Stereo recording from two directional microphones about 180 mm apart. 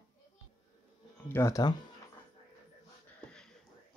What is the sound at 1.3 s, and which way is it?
Speech, 15° left (ahead or behind).